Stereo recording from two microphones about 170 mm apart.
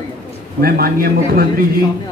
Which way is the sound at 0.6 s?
60° right (ahead or behind).